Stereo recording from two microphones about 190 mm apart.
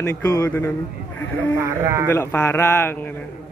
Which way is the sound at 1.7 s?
15° right (ahead or behind).